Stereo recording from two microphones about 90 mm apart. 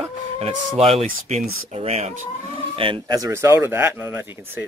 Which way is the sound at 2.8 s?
80° right.